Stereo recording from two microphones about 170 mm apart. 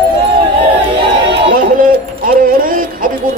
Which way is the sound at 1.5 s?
60° right (ahead or behind).